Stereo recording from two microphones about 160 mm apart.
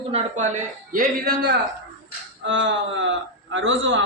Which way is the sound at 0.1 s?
50° right (ahead or behind).